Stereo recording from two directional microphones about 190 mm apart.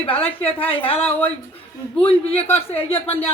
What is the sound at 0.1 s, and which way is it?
Speech, 10° left (ahead or behind).